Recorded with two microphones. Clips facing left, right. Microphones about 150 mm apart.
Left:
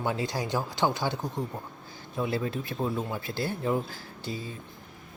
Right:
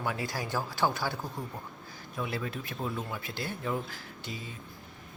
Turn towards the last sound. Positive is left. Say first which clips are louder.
# left 5 dB
turn(degrees=35)  # may be behind; listen again after turning